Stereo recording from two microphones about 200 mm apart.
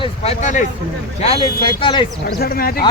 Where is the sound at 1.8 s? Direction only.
25° left (ahead or behind).